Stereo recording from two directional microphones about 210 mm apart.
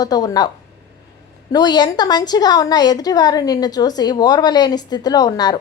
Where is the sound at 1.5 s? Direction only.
20° left (ahead or behind).